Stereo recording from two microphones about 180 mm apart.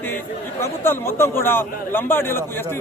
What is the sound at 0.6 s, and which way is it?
A man's voice, 15° left (ahead or behind).